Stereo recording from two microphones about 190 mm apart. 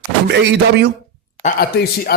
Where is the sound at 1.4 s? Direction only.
55° left (ahead or behind).